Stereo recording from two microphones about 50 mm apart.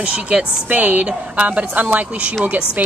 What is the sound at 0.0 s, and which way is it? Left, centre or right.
Speech, right.